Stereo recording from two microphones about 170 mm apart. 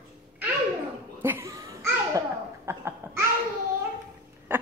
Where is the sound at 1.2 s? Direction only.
15° right (ahead or behind).